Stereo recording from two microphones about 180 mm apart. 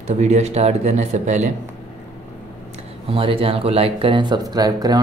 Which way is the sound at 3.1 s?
30° right (ahead or behind).